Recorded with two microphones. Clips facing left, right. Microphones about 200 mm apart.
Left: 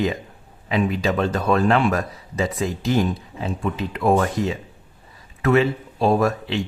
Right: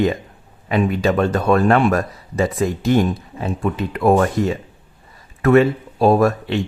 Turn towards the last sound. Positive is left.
turn(degrees=-55)  # may be behind; listen again after turning